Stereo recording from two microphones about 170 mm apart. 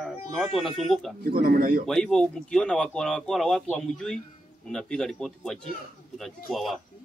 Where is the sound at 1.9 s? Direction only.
5° left (ahead or behind).